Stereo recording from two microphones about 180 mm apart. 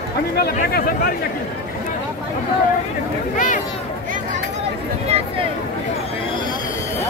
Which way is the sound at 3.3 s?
45° left (ahead or behind).